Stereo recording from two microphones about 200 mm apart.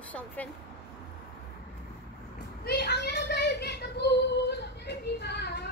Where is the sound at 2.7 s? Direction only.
55° left (ahead or behind).